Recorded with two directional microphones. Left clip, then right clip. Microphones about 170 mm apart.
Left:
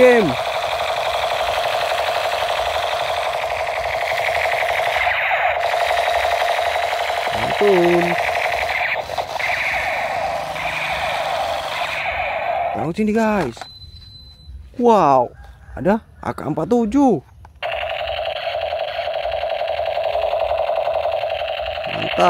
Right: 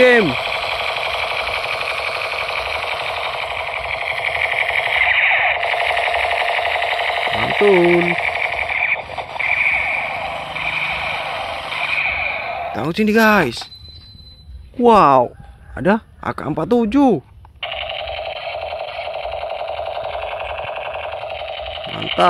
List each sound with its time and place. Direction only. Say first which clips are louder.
0.0 s speech: even; 10° left (ahead or behind)
0.3 s a sound: even; 20° left (ahead or behind)
12.7 s a man's voice: right 3 dB; centre (ahead or behind)
14.8 s speech: right 2 dB; 5° right (ahead or behind)
17.6 s a sound: left 2 dB; 25° left (ahead or behind)
20.2 s sewing machine: left 6 dB; 60° left (ahead or behind); by 22.2 s 35° left (ahead or behind)